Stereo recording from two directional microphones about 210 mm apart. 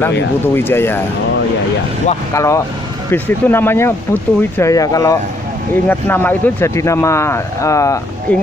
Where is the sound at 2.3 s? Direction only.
15° left (ahead or behind).